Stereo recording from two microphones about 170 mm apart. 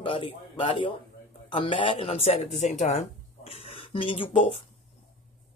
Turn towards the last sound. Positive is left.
turn(degrees=35)  # may be behind; listen again after turning